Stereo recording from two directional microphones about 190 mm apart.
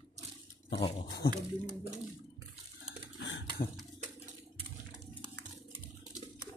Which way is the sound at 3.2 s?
70° left (ahead or behind).